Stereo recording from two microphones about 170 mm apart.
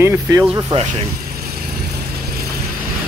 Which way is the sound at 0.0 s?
15° right (ahead or behind).